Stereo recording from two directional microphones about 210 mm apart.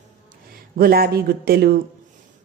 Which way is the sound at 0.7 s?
45° right (ahead or behind).